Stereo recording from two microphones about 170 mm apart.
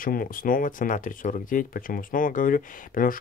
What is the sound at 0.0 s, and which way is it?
Speech, 55° left (ahead or behind).